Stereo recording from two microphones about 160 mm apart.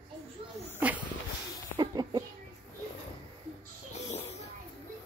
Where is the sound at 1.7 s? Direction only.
25° right (ahead or behind).